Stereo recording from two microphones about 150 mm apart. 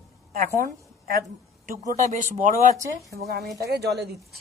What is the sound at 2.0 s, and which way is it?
Speech, 55° right (ahead or behind).